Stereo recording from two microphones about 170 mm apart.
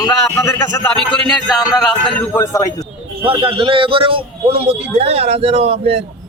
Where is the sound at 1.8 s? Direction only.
Centre (ahead or behind).